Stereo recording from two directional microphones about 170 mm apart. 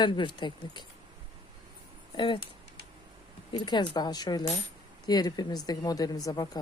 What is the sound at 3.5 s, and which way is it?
Speech, 25° left (ahead or behind).